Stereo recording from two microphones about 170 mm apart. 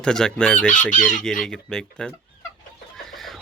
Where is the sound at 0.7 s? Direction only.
50° left (ahead or behind).